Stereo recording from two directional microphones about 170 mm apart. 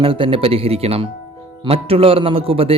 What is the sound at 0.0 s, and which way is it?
A man's voice, 30° right (ahead or behind).